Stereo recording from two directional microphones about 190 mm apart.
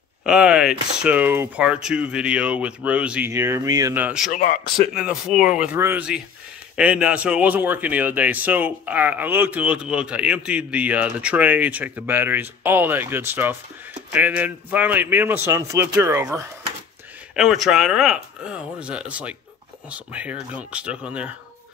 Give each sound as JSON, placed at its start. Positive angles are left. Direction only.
{"t": 0.2, "sound": "speech", "side_deg": -5}
{"t": 4.3, "sound": "speech", "side_deg": 40}
{"t": 4.9, "sound": "a man's voice", "side_deg": -5}
{"t": 17.4, "sound": "speech", "side_deg": 0}